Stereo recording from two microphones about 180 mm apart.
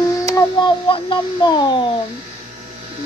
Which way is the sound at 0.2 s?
20° left (ahead or behind).